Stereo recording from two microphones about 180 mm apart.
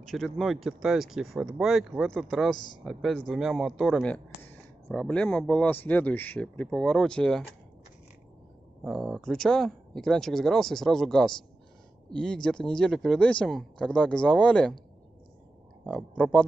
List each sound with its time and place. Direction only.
0.0 s speech: centre (ahead or behind)
2.5 s speech: 25° left (ahead or behind)
2.8 s speech: centre (ahead or behind)
8.8 s speech: centre (ahead or behind)
15.8 s speech: centre (ahead or behind)